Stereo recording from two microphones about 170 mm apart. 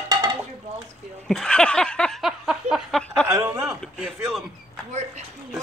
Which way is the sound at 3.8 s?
Centre (ahead or behind).